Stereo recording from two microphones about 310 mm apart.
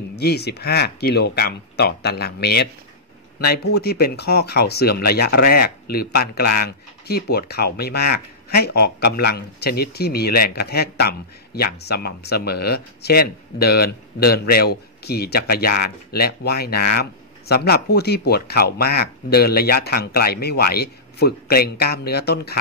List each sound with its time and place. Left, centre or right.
0.1 s speech: left